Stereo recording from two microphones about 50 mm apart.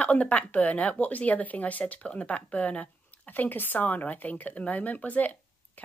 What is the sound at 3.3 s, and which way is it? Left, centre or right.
Speech, left.